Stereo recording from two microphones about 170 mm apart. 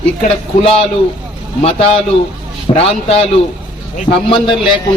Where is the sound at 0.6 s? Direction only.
35° left (ahead or behind).